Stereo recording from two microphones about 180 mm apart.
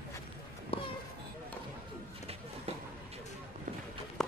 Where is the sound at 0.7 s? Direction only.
30° left (ahead or behind).